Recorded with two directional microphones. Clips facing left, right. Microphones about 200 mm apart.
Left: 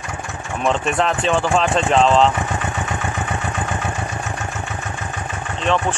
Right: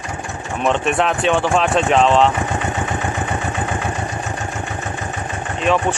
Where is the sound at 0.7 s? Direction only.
Centre (ahead or behind).